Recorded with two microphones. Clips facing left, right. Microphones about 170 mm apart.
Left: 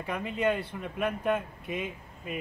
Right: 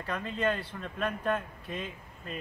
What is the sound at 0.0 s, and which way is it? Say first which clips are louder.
Speech: left 2 dB; 15° left (ahead or behind).